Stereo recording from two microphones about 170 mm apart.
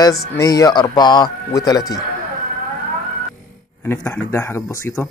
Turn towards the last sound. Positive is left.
turn(degrees=15)  # may be behind; listen again after turning